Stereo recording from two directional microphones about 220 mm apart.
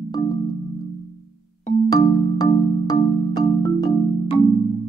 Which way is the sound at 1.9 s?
20° left (ahead or behind).